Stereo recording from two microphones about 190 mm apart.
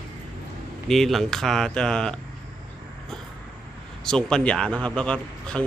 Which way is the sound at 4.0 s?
5° left (ahead or behind).